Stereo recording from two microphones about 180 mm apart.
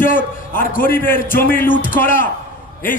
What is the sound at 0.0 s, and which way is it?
A man's voice, 50° left (ahead or behind).